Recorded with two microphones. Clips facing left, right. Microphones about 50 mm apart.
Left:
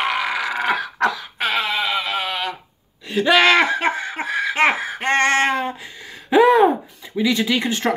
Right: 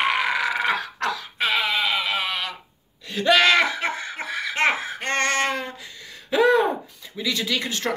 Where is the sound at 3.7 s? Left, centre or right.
Left.